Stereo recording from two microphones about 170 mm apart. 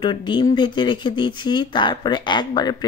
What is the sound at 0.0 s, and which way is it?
Speech, 30° left (ahead or behind).